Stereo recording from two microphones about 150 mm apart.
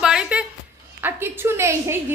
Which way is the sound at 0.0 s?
5° right (ahead or behind).